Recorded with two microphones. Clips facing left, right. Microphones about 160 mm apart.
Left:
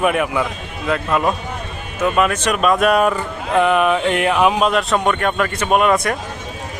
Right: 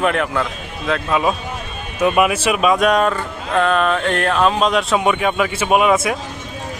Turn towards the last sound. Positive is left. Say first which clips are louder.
# right 1 dB
turn(degrees=-5)  # may be behind; listen again after turning